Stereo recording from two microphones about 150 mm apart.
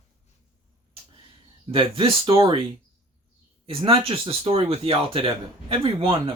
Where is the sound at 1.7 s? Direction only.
35° right (ahead or behind).